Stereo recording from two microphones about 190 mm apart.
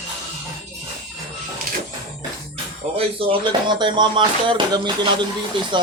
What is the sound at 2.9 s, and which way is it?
Speech, 30° right (ahead or behind).